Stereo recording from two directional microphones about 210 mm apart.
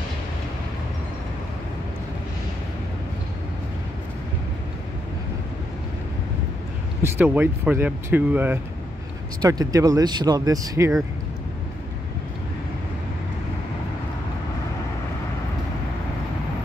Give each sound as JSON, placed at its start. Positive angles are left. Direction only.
{"t": 7.0, "sound": "speech", "side_deg": -10}